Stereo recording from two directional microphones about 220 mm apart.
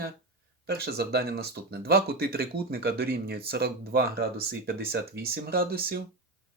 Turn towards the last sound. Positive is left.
turn(degrees=-45)  # may be behind; listen again after turning